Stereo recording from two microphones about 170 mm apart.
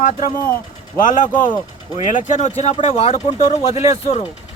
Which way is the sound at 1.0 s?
50° left (ahead or behind).